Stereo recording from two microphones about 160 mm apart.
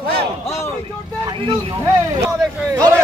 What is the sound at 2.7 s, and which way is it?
Speech, 20° right (ahead or behind).